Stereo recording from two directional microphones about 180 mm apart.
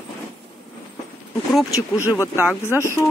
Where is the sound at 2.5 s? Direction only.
15° left (ahead or behind).